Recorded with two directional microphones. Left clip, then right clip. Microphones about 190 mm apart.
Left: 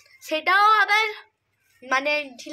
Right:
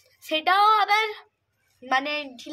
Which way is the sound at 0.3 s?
5° right (ahead or behind).